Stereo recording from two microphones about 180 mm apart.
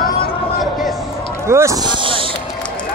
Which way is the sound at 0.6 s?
Centre (ahead or behind).